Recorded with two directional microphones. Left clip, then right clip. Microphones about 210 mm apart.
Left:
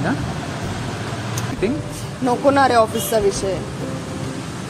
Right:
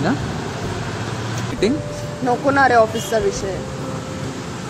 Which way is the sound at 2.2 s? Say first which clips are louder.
Even; 35° left (ahead or behind).